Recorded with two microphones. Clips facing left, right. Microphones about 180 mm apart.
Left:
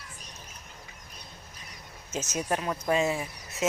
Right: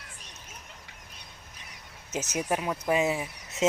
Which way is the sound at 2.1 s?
15° right (ahead or behind).